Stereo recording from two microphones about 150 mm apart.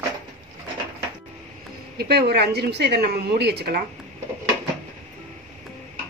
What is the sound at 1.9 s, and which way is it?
Speech, 90° right.